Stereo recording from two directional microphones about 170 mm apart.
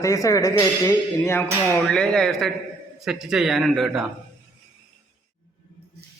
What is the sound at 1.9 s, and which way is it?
Speech, 5° left (ahead or behind).